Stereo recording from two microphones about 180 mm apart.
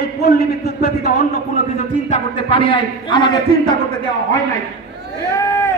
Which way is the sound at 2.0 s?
30° left (ahead or behind).